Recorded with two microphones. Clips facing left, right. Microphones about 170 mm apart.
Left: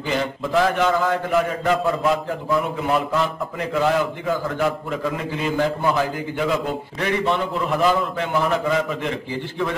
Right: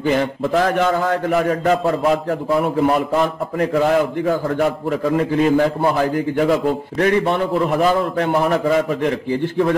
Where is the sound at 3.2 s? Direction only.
45° right (ahead or behind).